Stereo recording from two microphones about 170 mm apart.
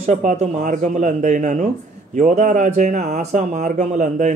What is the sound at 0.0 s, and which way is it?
Speech, 50° right (ahead or behind).